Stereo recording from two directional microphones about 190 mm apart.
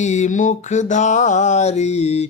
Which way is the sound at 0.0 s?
40° left (ahead or behind).